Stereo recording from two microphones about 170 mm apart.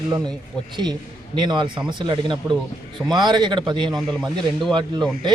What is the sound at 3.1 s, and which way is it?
Speech, 25° right (ahead or behind).